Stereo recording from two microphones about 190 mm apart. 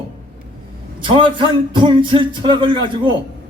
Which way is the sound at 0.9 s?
25° right (ahead or behind).